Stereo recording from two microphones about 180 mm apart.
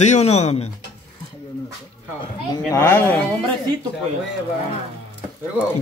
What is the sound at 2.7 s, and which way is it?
Speech, 10° left (ahead or behind).